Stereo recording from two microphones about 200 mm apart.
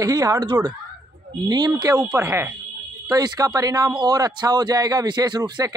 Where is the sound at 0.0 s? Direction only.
15° right (ahead or behind).